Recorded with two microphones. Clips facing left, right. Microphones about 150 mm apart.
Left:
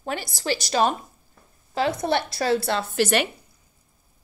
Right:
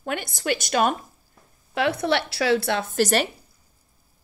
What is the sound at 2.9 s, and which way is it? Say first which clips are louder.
Speech: right 1 dB; 40° right (ahead or behind).